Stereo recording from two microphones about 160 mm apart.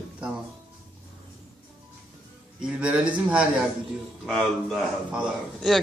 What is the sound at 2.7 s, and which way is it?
Speech, 5° right (ahead or behind).